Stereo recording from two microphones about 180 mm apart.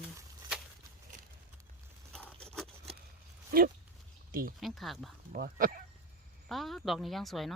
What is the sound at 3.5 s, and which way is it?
Speech, 55° right (ahead or behind).